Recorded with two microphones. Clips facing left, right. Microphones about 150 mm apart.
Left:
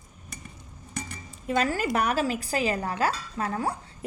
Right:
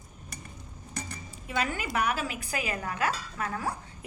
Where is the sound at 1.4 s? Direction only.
40° left (ahead or behind).